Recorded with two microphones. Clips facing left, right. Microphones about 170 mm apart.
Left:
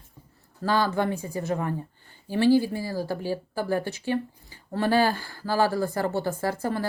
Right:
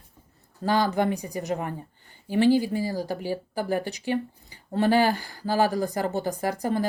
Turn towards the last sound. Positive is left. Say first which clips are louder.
# right 1 dB
turn(degrees=-15)  # may be behind; listen again after turning